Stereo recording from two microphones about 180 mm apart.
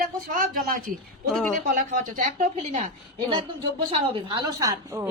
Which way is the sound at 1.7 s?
45° right (ahead or behind).